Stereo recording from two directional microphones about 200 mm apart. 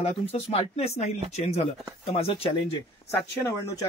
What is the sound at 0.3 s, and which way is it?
Speech, 30° left (ahead or behind).